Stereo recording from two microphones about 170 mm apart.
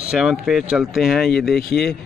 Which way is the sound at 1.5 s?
70° left (ahead or behind).